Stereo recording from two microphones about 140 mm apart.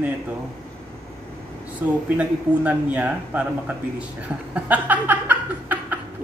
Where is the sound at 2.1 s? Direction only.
10° right (ahead or behind).